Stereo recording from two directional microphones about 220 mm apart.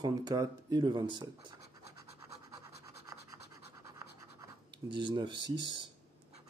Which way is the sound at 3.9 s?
20° right (ahead or behind).